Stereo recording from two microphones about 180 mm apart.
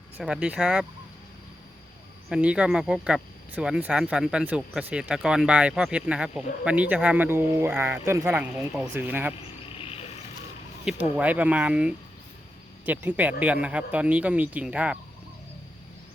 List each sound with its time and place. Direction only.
0.2 s speech: 5° right (ahead or behind)
2.3 s speech: 5° right (ahead or behind)
9.7 s cricket: 35° left (ahead or behind)
10.8 s speech: 10° right (ahead or behind)